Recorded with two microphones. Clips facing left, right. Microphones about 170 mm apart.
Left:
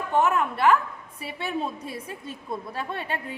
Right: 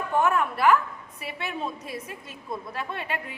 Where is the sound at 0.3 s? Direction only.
20° left (ahead or behind).